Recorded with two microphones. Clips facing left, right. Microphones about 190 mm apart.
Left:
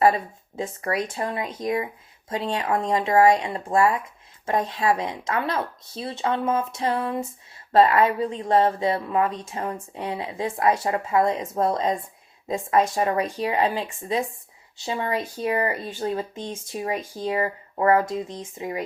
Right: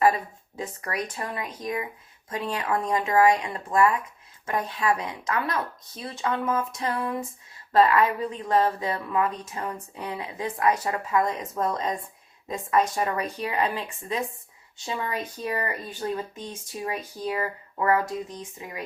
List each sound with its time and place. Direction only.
0.0 s speech: 30° left (ahead or behind)